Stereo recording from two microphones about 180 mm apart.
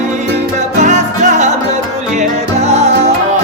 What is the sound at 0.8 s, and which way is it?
Music, 40° right (ahead or behind).